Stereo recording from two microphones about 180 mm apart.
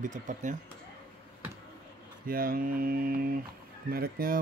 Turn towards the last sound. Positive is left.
turn(degrees=-55)  # may be behind; listen again after turning